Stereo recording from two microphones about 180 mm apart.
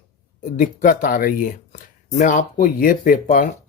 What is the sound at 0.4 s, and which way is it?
Speech, 45° left (ahead or behind).